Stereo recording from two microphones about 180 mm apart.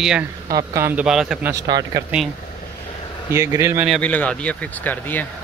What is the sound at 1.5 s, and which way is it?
Speech, 20° right (ahead or behind).